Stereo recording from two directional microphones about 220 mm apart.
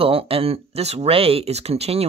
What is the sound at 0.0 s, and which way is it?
Speech, 25° right (ahead or behind).